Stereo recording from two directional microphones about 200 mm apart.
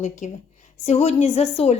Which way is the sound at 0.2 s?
35° left (ahead or behind).